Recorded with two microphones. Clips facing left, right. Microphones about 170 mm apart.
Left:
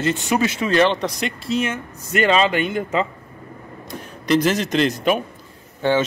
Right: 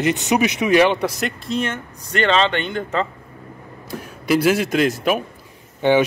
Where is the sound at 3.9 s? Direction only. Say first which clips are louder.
Even; 5° right (ahead or behind).